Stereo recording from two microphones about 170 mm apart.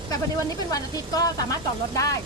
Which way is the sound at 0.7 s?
20° left (ahead or behind).